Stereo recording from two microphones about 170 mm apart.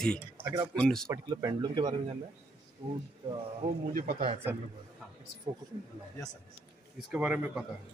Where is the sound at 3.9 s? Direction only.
55° right (ahead or behind).